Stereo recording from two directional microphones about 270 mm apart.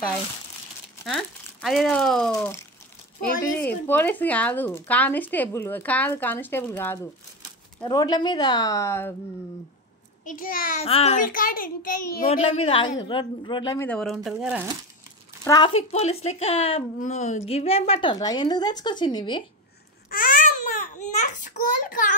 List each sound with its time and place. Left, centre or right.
1.0 s speech: centre
10.2 s a child's voice: left
12.4 s speech: left; by 14.7 s centre
15.4 s speech: centre
20.1 s baby cry: left